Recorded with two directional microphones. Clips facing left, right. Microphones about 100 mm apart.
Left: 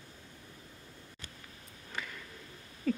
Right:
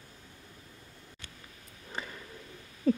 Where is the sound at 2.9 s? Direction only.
30° right (ahead or behind).